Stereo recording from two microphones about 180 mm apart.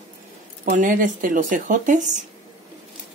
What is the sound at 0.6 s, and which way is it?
Speech, 45° right (ahead or behind).